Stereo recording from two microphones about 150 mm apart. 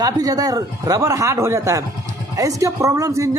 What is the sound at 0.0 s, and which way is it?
A woman's voice, 25° right (ahead or behind).